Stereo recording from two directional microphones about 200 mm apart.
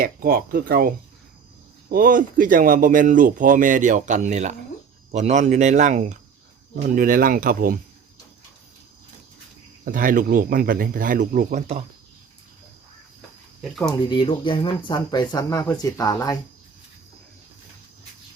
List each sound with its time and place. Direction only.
0.0 s speech: 45° right (ahead or behind)
9.8 s speech: 45° right (ahead or behind)
13.6 s speech: centre (ahead or behind)
14.1 s speech: 25° left (ahead or behind)